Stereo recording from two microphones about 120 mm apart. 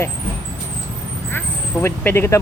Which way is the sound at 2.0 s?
20° left (ahead or behind).